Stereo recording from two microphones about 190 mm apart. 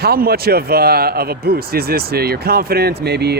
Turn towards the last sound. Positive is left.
turn(degrees=-60)  # may be behind; listen again after turning